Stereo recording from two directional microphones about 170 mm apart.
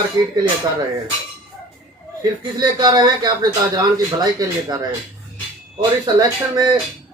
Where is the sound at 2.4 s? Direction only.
25° right (ahead or behind).